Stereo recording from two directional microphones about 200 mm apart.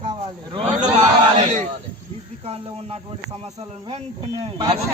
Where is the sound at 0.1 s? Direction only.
25° right (ahead or behind).